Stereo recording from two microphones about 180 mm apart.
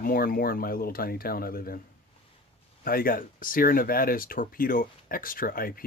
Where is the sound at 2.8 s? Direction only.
55° left (ahead or behind).